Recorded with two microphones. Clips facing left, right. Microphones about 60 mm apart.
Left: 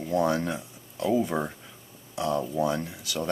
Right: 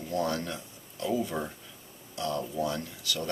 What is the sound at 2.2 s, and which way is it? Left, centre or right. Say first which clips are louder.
Speech: left 5 dB; centre.